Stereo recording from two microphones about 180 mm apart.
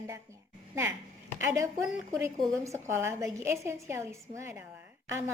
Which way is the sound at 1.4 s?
15° right (ahead or behind).